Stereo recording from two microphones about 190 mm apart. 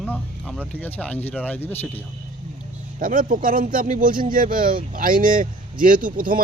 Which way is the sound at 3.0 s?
45° right (ahead or behind).